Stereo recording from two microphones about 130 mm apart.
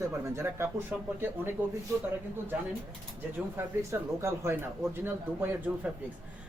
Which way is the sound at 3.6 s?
20° right (ahead or behind).